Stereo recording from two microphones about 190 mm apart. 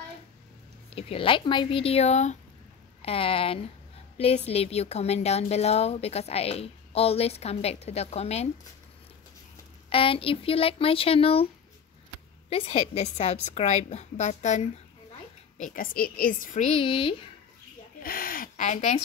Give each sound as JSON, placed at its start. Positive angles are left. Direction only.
{"t": 0.8, "sound": "a woman's voice", "side_deg": 30}
{"t": 9.8, "sound": "speech", "side_deg": 30}
{"t": 12.4, "sound": "a woman's voice", "side_deg": 35}
{"t": 18.0, "sound": "speech", "side_deg": 50}